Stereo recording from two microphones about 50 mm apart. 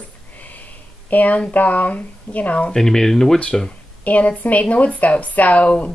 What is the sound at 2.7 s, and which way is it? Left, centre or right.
Speech, centre.